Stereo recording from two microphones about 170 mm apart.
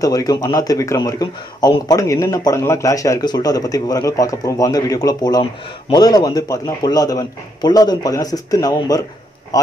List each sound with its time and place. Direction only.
0.0 s speech: 20° left (ahead or behind)